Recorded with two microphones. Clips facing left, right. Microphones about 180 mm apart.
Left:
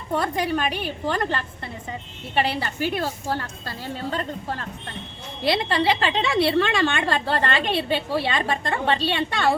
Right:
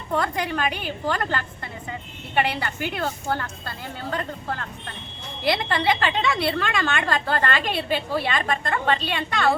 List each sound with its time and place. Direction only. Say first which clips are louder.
0.2 s a woman's voice: left 2 dB; 25° left (ahead or behind)